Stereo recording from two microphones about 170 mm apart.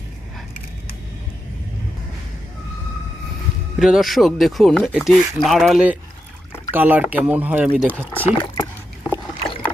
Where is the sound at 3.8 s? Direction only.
Centre (ahead or behind).